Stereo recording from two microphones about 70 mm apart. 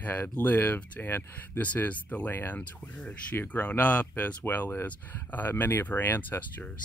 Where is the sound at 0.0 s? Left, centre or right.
Left.